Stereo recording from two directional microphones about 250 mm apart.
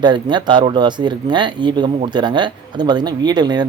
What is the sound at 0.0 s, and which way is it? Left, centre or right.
Speech, centre.